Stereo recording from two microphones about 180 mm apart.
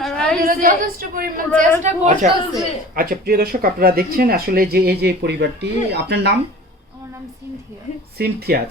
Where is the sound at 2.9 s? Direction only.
50° right (ahead or behind).